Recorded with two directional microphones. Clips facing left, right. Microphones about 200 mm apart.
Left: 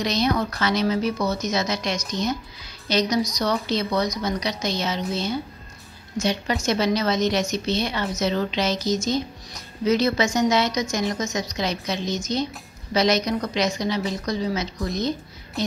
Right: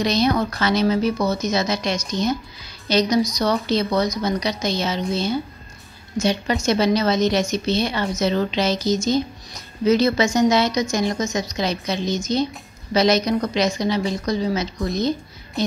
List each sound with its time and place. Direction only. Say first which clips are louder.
0.0 s a woman's voice: right 3 dB; 30° right (ahead or behind)